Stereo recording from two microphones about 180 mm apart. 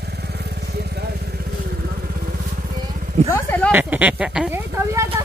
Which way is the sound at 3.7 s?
10° right (ahead or behind).